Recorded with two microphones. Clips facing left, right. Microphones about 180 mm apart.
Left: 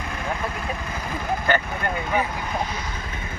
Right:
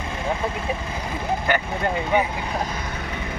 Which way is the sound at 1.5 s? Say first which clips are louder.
Left 1 dB; 15° right (ahead or behind).